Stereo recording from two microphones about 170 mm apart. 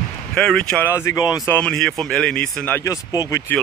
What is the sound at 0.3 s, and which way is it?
Speech, 5° left (ahead or behind).